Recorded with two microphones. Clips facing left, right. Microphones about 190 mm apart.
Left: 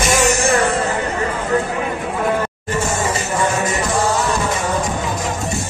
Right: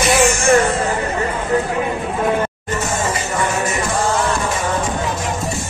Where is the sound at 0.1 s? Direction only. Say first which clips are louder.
Right 1 dB; 40° left (ahead or behind).